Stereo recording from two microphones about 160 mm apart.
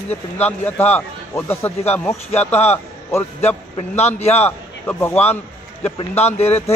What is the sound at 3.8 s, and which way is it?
Speech, 45° left (ahead or behind).